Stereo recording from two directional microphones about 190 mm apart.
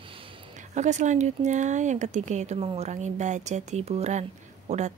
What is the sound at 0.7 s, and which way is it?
Speech, 40° right (ahead or behind).